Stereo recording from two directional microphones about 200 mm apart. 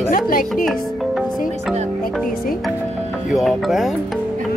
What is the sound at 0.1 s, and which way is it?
Speech, 45° left (ahead or behind).